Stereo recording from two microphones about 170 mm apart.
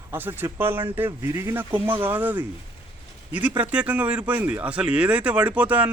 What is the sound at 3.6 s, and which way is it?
Speech, 10° right (ahead or behind).